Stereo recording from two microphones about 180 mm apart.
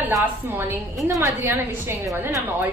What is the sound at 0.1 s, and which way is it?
A woman's voice, 15° right (ahead or behind).